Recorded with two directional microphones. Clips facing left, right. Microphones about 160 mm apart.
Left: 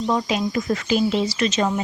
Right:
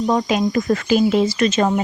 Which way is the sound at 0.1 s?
50° right (ahead or behind).